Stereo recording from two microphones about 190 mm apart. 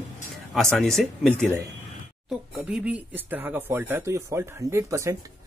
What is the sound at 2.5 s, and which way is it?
Speech, 5° right (ahead or behind).